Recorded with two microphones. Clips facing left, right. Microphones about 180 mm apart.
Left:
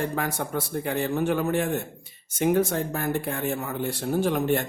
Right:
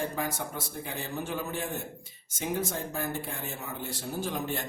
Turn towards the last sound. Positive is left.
turn(degrees=65)  # may be behind; listen again after turning